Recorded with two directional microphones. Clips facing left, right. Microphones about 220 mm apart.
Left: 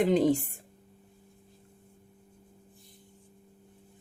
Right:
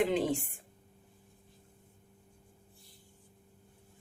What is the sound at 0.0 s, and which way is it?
Speech, 40° left (ahead or behind).